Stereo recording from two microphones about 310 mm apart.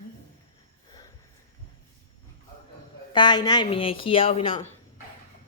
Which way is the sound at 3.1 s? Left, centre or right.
Centre.